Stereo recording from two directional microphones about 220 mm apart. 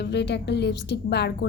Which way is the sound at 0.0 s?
50° left (ahead or behind).